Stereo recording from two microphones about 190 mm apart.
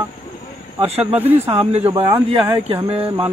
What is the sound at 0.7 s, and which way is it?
Speech, 30° right (ahead or behind).